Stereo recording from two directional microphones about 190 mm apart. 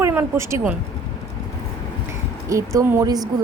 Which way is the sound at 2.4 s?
15° right (ahead or behind).